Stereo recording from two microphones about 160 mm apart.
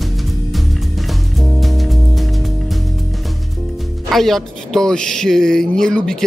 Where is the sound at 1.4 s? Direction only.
Centre (ahead or behind).